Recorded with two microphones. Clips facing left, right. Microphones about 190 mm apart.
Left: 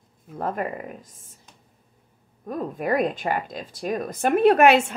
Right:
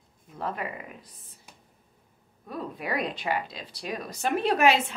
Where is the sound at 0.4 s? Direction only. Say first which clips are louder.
Left 6 dB; 45° left (ahead or behind).